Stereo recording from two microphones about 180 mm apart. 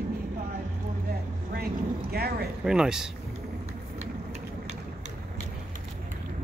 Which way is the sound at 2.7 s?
5° right (ahead or behind).